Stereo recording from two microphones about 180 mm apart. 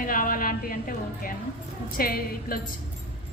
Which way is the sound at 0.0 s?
50° left (ahead or behind).